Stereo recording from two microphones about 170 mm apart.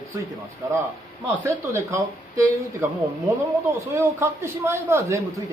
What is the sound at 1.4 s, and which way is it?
A man's voice, 15° right (ahead or behind).